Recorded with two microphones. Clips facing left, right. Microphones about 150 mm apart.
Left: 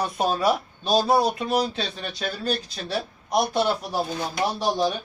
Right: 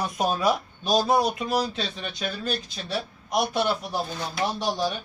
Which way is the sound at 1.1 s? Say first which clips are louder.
Left 2 dB; 30° left (ahead or behind).